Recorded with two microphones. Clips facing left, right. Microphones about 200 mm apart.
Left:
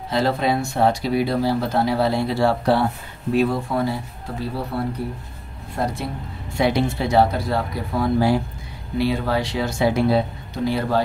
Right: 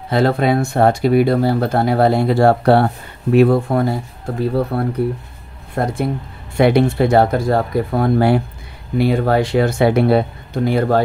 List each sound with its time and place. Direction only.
0.1 s speech: 55° right (ahead or behind)